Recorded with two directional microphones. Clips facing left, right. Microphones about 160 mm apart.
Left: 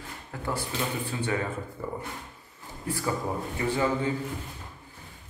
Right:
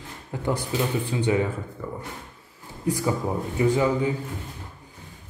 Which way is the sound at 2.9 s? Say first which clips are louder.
Right 5 dB; 15° right (ahead or behind).